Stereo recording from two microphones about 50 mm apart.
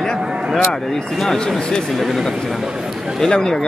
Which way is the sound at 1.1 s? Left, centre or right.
Centre.